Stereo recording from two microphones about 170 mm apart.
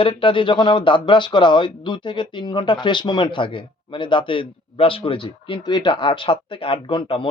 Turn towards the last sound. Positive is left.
turn(degrees=30)  # may be behind; listen again after turning